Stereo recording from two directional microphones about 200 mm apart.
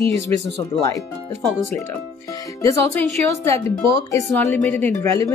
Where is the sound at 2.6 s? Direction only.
15° left (ahead or behind).